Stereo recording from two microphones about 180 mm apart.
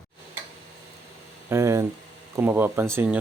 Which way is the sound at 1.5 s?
15° right (ahead or behind).